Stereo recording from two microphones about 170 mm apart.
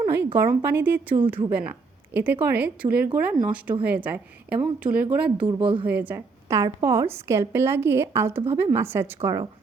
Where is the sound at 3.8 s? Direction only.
10° right (ahead or behind).